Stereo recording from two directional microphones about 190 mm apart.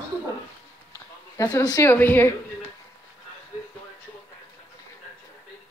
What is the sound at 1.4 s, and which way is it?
Speech, 20° left (ahead or behind).